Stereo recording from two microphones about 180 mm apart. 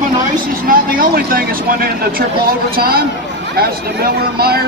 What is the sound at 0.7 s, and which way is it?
Speech, 55° right (ahead or behind).